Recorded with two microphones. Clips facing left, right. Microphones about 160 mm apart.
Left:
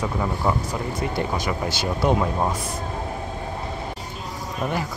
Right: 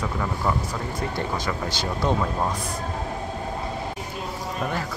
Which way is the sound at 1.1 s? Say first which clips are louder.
Left 2 dB; 10° left (ahead or behind).